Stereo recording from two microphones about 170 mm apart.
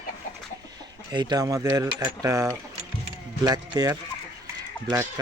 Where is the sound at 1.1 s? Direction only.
25° right (ahead or behind).